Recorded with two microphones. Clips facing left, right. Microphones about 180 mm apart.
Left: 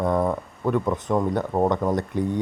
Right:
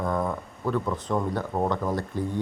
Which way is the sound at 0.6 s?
20° left (ahead or behind).